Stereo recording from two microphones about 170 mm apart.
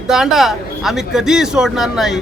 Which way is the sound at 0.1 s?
5° right (ahead or behind).